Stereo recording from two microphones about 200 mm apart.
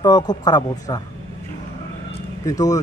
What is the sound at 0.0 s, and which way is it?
A man's voice, 20° left (ahead or behind).